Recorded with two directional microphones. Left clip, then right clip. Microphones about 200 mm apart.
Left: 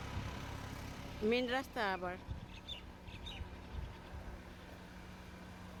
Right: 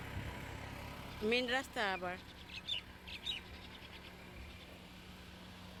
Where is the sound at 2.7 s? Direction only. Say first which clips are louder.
Right 8 dB; 45° left (ahead or behind).